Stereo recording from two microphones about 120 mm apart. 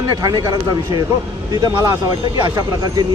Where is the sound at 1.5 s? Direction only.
30° right (ahead or behind).